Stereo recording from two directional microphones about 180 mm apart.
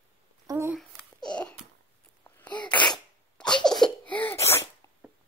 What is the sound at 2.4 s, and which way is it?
Sneeze, 10° left (ahead or behind).